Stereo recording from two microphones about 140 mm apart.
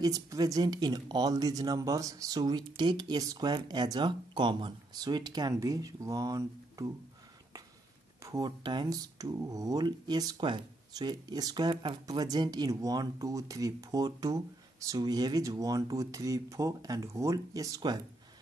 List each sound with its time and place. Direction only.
0.0 s speech: 25° right (ahead or behind)
8.2 s speech: 25° right (ahead or behind)